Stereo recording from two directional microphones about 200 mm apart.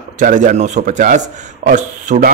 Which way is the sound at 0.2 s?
40° right (ahead or behind).